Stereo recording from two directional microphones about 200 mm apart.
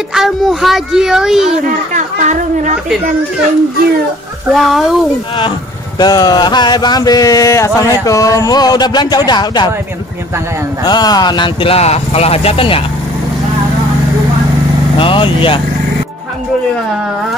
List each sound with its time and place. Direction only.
0.1 s speech: centre (ahead or behind)
2.0 s speech: 40° right (ahead or behind)
4.5 s speech: centre (ahead or behind)
5.9 s a sound: 20° left (ahead or behind)
10.9 s a sound: 20° left (ahead or behind)
15.0 s speech: 25° left (ahead or behind)